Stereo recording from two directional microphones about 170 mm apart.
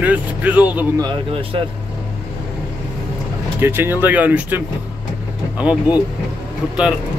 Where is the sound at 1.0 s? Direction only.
30° right (ahead or behind).